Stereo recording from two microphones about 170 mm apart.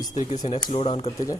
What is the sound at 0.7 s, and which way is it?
Speech, 35° left (ahead or behind).